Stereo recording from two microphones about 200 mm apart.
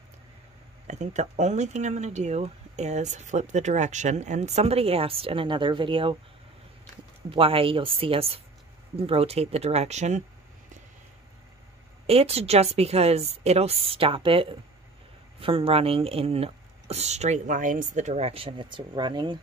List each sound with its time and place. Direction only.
0.8 s speech: 35° right (ahead or behind)
7.2 s speech: 25° right (ahead or behind)
12.1 s speech: 30° right (ahead or behind)